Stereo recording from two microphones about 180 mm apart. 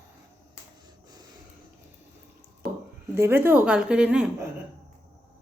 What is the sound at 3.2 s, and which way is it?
A woman's voice, 10° right (ahead or behind).